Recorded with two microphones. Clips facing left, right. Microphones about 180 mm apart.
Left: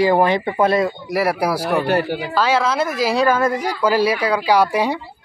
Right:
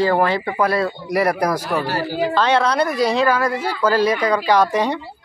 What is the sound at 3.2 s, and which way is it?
Speech, 20° left (ahead or behind).